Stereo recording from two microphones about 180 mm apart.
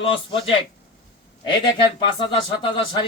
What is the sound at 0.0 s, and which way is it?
Speech, 30° left (ahead or behind).